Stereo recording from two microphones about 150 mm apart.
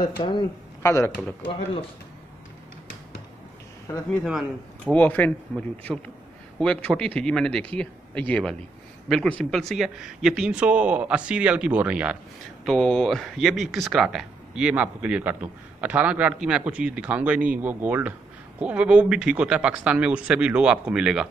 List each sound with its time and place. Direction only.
0.0 s speech: 30° left (ahead or behind)
0.8 s speech: 20° left (ahead or behind)
4.2 s speech: 5° right (ahead or behind)
4.9 s speech: 10° left (ahead or behind); by 12.2 s 10° right (ahead or behind)
12.6 s speech: 5° left (ahead or behind)